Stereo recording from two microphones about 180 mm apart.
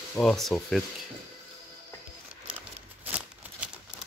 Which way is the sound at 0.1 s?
5° left (ahead or behind).